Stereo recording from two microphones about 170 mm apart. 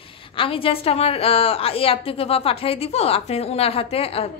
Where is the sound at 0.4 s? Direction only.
30° left (ahead or behind).